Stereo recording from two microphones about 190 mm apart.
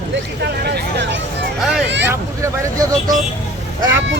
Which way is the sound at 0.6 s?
65° right (ahead or behind).